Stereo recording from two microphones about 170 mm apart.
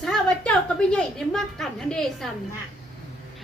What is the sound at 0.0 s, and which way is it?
A woman's voice, 5° left (ahead or behind).